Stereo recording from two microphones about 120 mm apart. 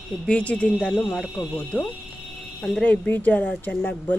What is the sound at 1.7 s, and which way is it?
Speech, 10° left (ahead or behind).